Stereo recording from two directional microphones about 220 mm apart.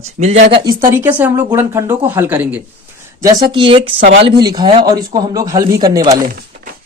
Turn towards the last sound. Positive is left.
turn(degrees=-15)  # may be behind; listen again after turning